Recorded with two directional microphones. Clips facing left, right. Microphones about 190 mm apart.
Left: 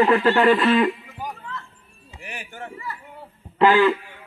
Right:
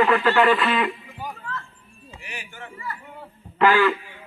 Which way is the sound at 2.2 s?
50° left (ahead or behind).